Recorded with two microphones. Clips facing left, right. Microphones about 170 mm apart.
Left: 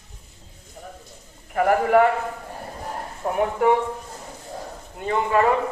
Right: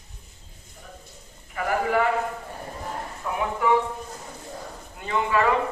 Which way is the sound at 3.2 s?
50° left (ahead or behind).